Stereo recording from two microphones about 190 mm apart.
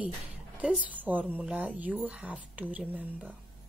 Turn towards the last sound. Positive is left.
turn(degrees=-10)  # may be behind; listen again after turning